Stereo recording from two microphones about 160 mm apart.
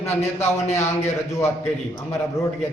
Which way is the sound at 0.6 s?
45° left (ahead or behind).